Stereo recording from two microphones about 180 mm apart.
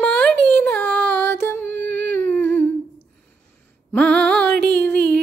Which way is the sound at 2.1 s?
10° left (ahead or behind).